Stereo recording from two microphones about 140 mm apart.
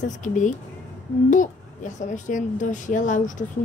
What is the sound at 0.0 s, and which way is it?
A child's voice, 65° left (ahead or behind).